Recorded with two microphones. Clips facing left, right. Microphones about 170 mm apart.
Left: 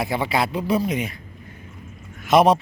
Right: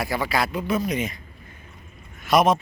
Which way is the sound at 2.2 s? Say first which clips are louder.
Left 3 dB; 30° left (ahead or behind).